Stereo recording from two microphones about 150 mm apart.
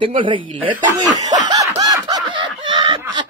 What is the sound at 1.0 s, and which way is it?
Snicker, 25° right (ahead or behind).